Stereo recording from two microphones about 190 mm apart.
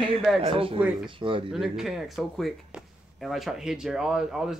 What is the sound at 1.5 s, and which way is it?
Speech, centre (ahead or behind).